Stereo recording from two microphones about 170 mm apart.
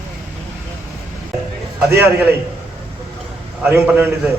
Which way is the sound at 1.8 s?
15° right (ahead or behind).